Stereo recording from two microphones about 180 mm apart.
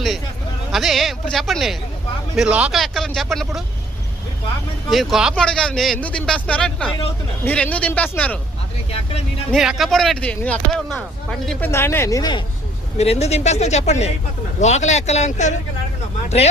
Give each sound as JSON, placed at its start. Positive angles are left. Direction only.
{"t": 0.7, "sound": "speech", "side_deg": 0}
{"t": 4.9, "sound": "speech", "side_deg": 0}
{"t": 9.5, "sound": "speech", "side_deg": 0}
{"t": 11.7, "sound": "speech", "side_deg": 15}
{"t": 13.0, "sound": "a man's voice", "side_deg": 35}